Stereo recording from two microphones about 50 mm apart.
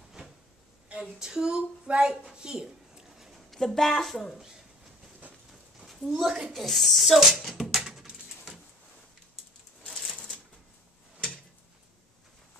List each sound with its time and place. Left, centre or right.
1.2 s speech: centre
3.2 s speech: centre
5.5 s a sound: centre
9.8 s shuffling cards: centre